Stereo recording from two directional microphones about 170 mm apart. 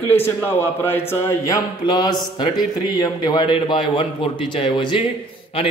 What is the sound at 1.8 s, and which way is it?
A man's voice, 25° left (ahead or behind).